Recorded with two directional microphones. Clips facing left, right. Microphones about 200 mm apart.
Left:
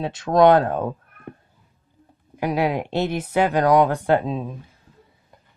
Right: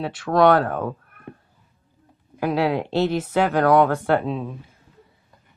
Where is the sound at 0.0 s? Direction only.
20° left (ahead or behind).